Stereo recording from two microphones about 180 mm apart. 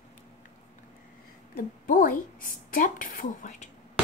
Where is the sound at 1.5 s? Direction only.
50° left (ahead or behind).